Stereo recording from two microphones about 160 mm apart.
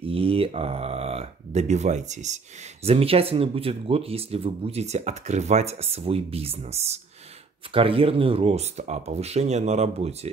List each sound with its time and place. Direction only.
0.0 s speech: 35° right (ahead or behind)